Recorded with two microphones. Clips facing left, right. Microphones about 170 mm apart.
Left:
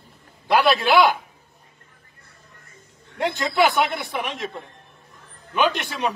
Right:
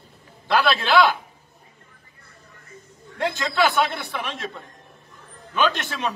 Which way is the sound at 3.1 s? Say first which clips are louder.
Left 2 dB; 15° left (ahead or behind).